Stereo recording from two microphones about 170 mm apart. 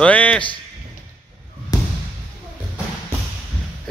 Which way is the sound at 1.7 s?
20° left (ahead or behind).